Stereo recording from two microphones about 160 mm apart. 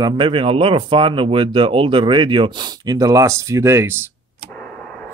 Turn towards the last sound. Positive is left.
turn(degrees=-15)  # may be behind; listen again after turning